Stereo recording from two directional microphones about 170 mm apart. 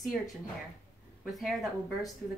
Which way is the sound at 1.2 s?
Centre (ahead or behind).